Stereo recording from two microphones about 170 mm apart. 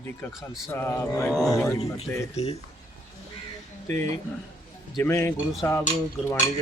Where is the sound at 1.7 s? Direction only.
35° left (ahead or behind).